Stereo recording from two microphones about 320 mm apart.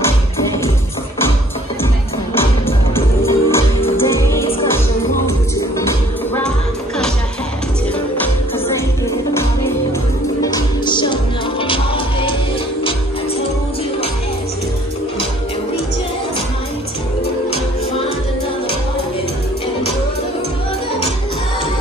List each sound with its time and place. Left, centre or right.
2.9 s music: centre
10.4 s music: centre